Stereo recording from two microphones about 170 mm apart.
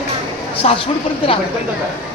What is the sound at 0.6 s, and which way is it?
Speech, 40° left (ahead or behind).